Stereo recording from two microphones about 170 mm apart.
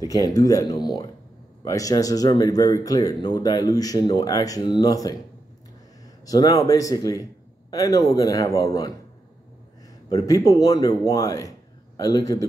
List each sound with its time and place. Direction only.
0.1 s speech: 20° left (ahead or behind)
6.2 s speech: 20° left (ahead or behind)
10.0 s speech: 20° left (ahead or behind)